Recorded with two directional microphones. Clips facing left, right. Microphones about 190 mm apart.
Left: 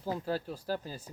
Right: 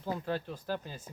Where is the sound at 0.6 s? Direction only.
35° left (ahead or behind).